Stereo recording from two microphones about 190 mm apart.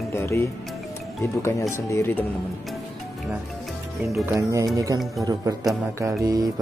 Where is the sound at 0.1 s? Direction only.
10° left (ahead or behind).